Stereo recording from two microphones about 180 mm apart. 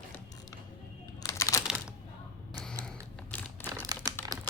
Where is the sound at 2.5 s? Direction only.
5° left (ahead or behind).